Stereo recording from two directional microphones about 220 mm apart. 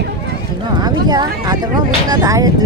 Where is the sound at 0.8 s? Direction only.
20° right (ahead or behind).